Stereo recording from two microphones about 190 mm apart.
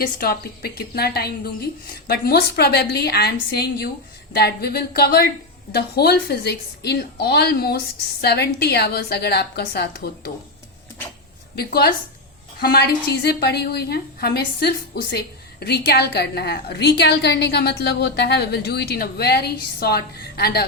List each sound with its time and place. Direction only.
0.2 s a woman's voice: 55° left (ahead or behind)
11.5 s a woman's voice: 55° left (ahead or behind)